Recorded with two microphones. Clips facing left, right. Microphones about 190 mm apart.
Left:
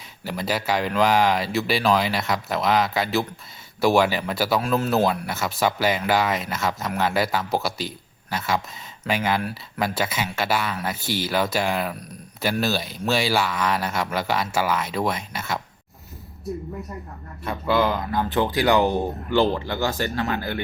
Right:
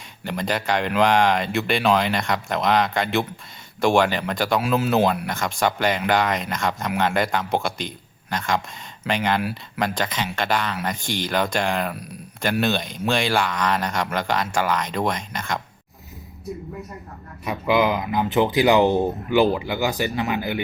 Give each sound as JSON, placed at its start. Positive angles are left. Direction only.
{"t": 0.3, "sound": "speech", "side_deg": 5}
{"t": 9.4, "sound": "speech", "side_deg": -5}
{"t": 9.8, "sound": "speech", "side_deg": 5}
{"t": 17.4, "sound": "speech", "side_deg": -15}